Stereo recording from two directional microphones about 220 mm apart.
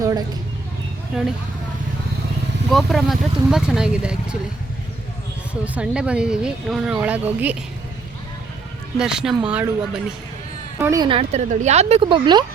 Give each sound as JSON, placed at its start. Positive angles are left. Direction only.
{"t": 0.0, "sound": "a sound", "side_deg": -15}
{"t": 1.1, "sound": "speech", "side_deg": 0}
{"t": 2.6, "sound": "speech", "side_deg": 0}
{"t": 5.6, "sound": "speech", "side_deg": -5}
{"t": 9.0, "sound": "speech", "side_deg": -5}